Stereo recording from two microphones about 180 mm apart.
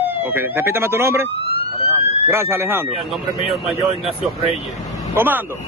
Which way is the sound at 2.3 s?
15° right (ahead or behind).